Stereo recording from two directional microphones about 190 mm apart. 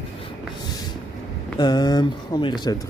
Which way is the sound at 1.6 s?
20° left (ahead or behind).